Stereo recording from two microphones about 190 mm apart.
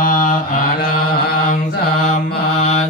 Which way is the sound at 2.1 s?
35° left (ahead or behind).